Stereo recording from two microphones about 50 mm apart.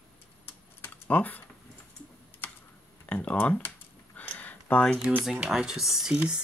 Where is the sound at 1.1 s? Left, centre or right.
Left.